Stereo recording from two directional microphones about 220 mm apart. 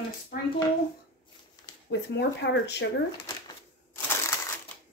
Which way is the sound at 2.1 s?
50° left (ahead or behind).